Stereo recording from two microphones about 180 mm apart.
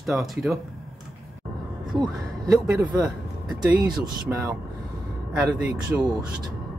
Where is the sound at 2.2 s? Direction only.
15° right (ahead or behind).